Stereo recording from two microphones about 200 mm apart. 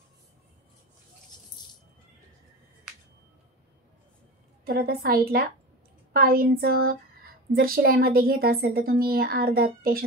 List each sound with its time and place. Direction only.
4.6 s a woman's voice: 50° right (ahead or behind)